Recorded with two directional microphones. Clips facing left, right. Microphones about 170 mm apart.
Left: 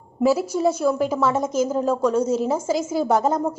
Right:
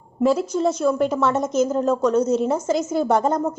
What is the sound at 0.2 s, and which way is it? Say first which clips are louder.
A woman's voice: even; 5° left (ahead or behind).